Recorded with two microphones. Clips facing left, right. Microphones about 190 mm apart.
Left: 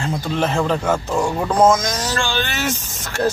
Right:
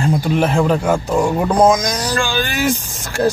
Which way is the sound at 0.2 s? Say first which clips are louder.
Right 4 dB; 10° right (ahead or behind).